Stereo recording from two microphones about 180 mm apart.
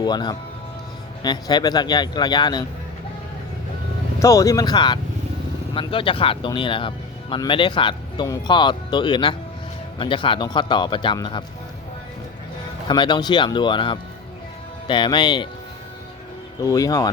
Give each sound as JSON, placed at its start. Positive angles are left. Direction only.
{"t": 0.0, "sound": "speech", "side_deg": 25}
{"t": 4.2, "sound": "speech", "side_deg": 20}
{"t": 12.9, "sound": "speech", "side_deg": 25}
{"t": 16.6, "sound": "speech", "side_deg": 20}